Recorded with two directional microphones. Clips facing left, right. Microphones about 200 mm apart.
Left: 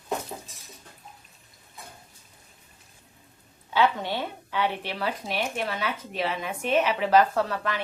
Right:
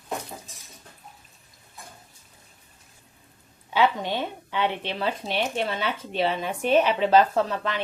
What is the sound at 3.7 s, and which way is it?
A woman's voice, 15° right (ahead or behind).